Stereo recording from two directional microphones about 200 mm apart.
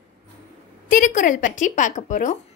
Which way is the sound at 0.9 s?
40° left (ahead or behind).